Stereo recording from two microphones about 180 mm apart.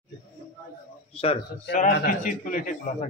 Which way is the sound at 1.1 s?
35° left (ahead or behind).